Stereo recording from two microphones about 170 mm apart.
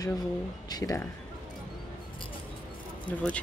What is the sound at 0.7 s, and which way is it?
Speech, 20° left (ahead or behind).